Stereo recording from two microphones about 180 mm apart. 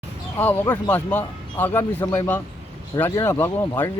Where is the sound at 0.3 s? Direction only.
10° left (ahead or behind).